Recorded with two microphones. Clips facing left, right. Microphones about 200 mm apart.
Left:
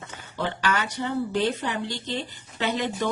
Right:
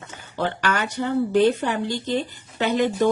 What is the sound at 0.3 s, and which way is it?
A woman's voice, 55° right (ahead or behind).